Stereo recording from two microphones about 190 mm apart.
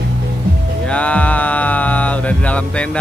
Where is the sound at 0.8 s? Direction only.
5° left (ahead or behind).